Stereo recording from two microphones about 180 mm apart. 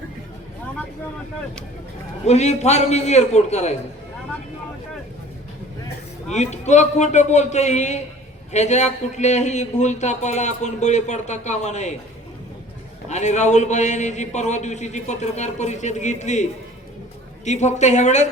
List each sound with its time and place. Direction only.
2.2 s speech: 40° left (ahead or behind)
6.2 s speech: 40° left (ahead or behind)
13.1 s speech: 40° left (ahead or behind)